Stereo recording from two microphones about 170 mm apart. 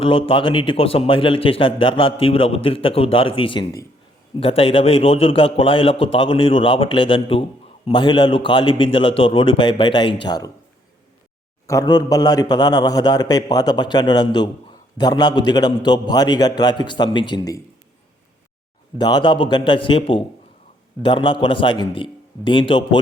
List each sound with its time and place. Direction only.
0.0 s a man's voice: 30° left (ahead or behind)
11.6 s a man's voice: 20° left (ahead or behind)
18.9 s a man's voice: 25° left (ahead or behind)